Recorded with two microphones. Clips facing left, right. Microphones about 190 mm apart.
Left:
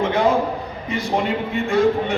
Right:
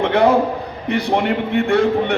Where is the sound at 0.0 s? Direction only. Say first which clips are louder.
Right 4 dB; 65° right (ahead or behind).